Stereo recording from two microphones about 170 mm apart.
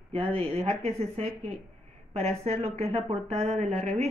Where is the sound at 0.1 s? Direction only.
35° right (ahead or behind).